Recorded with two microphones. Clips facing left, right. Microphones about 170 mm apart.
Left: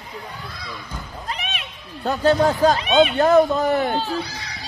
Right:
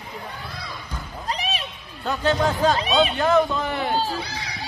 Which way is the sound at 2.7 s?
35° right (ahead or behind).